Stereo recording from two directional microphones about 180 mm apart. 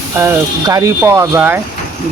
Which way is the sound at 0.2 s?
15° right (ahead or behind).